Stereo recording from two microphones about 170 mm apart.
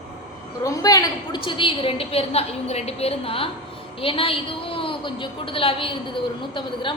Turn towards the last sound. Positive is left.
turn(degrees=30)  # may be behind; listen again after turning